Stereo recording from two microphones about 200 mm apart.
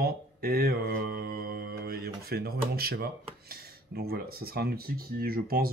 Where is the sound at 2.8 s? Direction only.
50° right (ahead or behind).